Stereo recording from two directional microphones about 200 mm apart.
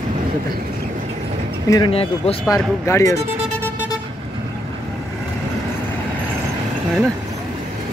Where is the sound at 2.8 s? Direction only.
15° left (ahead or behind).